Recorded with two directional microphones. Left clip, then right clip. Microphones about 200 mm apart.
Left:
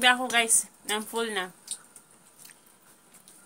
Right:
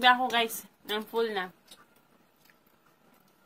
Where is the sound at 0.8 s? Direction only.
20° left (ahead or behind).